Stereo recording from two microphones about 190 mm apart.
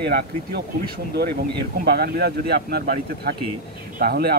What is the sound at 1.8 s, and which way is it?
Speech, 55° right (ahead or behind).